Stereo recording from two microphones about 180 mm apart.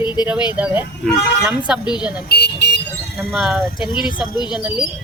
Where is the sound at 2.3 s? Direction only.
65° left (ahead or behind).